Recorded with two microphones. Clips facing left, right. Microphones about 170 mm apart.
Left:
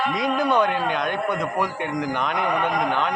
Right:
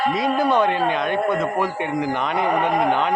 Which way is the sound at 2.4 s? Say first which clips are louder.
Right 5 dB; 30° right (ahead or behind).